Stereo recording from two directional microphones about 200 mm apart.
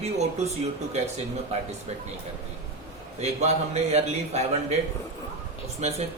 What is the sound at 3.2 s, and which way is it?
Speech, 35° right (ahead or behind).